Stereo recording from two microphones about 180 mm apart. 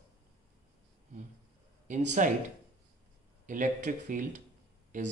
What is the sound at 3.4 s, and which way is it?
Speech, 45° right (ahead or behind).